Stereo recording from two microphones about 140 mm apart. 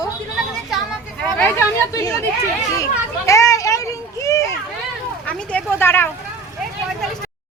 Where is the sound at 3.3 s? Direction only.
25° left (ahead or behind).